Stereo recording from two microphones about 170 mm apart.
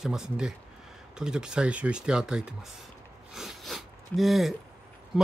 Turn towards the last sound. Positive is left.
turn(degrees=0)  # may be behind; listen again after turning